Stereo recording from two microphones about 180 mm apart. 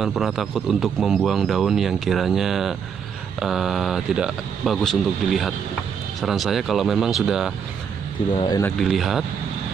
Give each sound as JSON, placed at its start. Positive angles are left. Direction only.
{"t": 0.0, "sound": "a man's voice", "side_deg": 0}
{"t": 8.5, "sound": "speech", "side_deg": 20}
{"t": 8.7, "sound": "a man's voice", "side_deg": 0}